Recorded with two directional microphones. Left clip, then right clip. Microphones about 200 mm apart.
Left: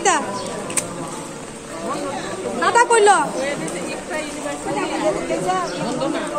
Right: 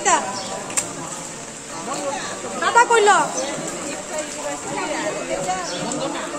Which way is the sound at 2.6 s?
45° left (ahead or behind).